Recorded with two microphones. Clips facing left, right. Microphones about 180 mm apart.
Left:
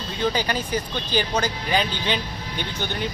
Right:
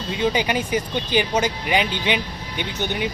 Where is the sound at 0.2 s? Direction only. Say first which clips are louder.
Right 2 dB; 20° right (ahead or behind).